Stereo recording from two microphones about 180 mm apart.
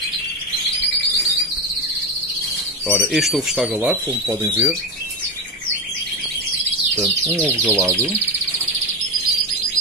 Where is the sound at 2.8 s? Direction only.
Centre (ahead or behind).